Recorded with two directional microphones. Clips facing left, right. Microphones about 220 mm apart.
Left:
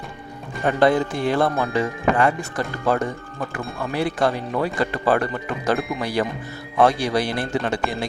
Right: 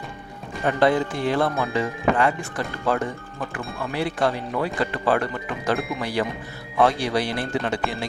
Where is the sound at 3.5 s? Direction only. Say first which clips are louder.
Left 3 dB; 45° left (ahead or behind).